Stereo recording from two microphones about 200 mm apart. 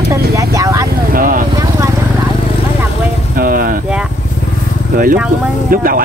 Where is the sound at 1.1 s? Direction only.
45° right (ahead or behind).